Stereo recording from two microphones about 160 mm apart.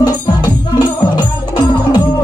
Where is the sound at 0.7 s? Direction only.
25° left (ahead or behind).